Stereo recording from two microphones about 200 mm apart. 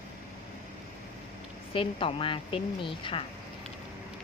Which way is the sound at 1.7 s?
25° left (ahead or behind).